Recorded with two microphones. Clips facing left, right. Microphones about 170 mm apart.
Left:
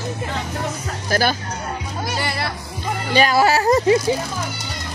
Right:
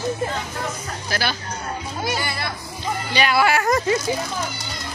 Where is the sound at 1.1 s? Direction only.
45° left (ahead or behind).